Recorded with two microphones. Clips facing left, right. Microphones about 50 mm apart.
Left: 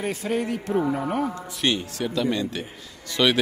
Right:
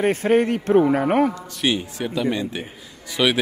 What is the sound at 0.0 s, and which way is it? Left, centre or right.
A man's voice, right.